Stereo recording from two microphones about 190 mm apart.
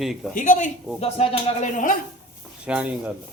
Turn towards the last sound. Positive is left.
turn(degrees=-5)  # may be behind; listen again after turning